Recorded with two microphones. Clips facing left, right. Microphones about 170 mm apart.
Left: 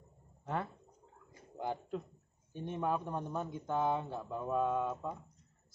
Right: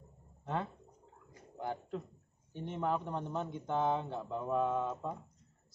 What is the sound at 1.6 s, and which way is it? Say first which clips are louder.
Speech: left 1 dB; 10° left (ahead or behind).